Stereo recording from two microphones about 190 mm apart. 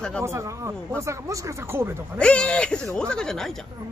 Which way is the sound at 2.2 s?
5° left (ahead or behind).